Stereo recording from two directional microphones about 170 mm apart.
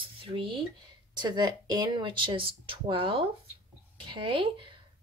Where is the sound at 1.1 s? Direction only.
25° right (ahead or behind).